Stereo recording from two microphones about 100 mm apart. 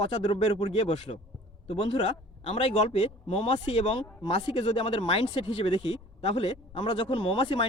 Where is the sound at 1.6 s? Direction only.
70° left (ahead or behind).